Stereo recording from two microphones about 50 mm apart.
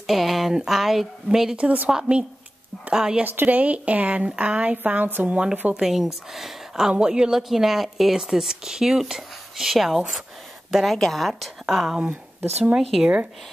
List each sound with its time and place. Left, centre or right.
0.0 s speech: centre
1.6 s speech: right
3.3 s speech: right
5.3 s speech: centre
5.8 s speech: centre
6.9 s speech: centre
12.1 s speech: right